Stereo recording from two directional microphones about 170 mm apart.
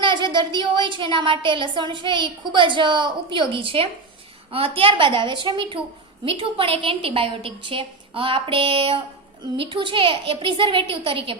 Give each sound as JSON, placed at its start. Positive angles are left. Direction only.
{"t": 0.0, "sound": "a woman's voice", "side_deg": -25}